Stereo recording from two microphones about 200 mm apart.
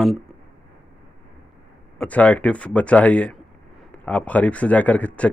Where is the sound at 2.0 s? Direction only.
5° left (ahead or behind).